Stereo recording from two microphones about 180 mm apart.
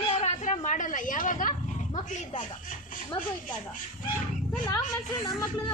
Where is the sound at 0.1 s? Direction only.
35° left (ahead or behind).